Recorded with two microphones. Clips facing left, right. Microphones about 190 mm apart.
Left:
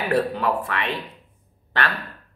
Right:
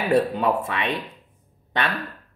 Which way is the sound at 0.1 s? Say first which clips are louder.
Right 2 dB; 20° right (ahead or behind).